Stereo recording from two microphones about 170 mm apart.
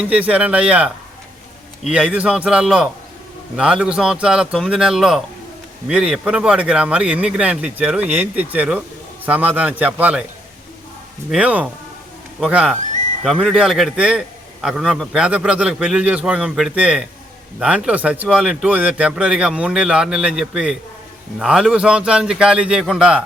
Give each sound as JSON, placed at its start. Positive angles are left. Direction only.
{"t": 0.0, "sound": "speech", "side_deg": -5}
{"t": 1.9, "sound": "a man's voice", "side_deg": -5}
{"t": 11.3, "sound": "speech", "side_deg": -5}
{"t": 12.8, "sound": "a sound", "side_deg": -45}
{"t": 13.2, "sound": "a man's voice", "side_deg": -5}